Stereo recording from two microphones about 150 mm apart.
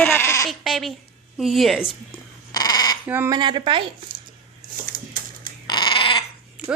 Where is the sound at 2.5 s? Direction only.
25° left (ahead or behind).